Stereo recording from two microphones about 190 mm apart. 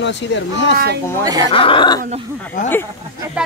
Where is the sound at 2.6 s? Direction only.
40° left (ahead or behind).